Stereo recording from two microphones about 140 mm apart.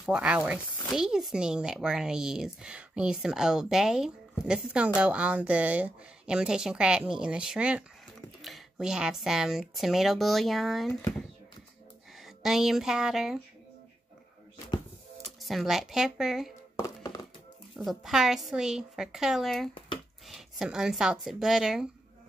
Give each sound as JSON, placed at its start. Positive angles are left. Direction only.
{"t": 0.0, "sound": "speech", "side_deg": -5}
{"t": 12.2, "sound": "speech", "side_deg": 0}
{"t": 15.2, "sound": "speech", "side_deg": 0}
{"t": 17.0, "sound": "music", "side_deg": 25}
{"t": 17.8, "sound": "speech", "side_deg": 0}